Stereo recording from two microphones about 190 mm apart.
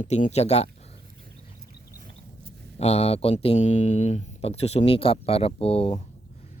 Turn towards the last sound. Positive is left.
turn(degrees=30)  # may be behind; listen again after turning